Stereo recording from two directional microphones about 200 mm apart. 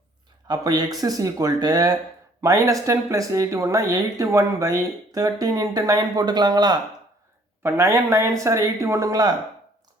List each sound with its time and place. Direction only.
0.4 s speech: 20° right (ahead or behind)